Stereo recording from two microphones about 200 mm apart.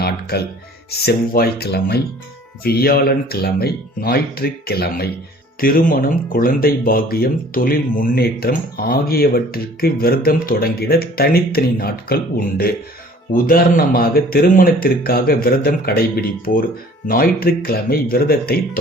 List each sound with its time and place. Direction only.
0.9 s speech: 50° left (ahead or behind)
13.3 s speech: 45° left (ahead or behind)